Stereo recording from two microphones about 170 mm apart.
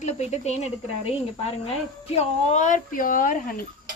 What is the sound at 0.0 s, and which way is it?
A woman's voice, 40° left (ahead or behind).